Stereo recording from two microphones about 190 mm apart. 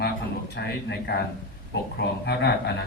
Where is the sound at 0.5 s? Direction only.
55° left (ahead or behind).